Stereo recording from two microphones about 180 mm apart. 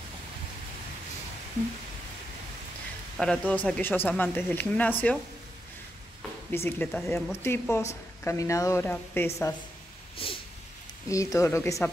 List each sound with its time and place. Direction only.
3.2 s speech: 5° left (ahead or behind)
6.5 s speech: 10° left (ahead or behind)
10.1 s a sound: 30° left (ahead or behind)
11.1 s speech: 15° left (ahead or behind)